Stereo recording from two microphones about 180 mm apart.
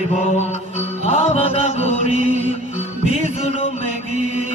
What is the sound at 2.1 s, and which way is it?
Music, 45° right (ahead or behind).